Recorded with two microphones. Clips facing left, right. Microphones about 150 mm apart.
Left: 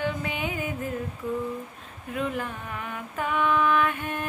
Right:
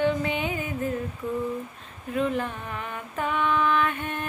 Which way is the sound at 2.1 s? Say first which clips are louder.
Right 4 dB; 5° left (ahead or behind).